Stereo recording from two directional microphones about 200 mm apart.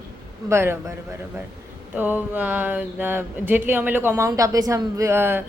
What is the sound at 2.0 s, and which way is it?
Speech, 10° right (ahead or behind).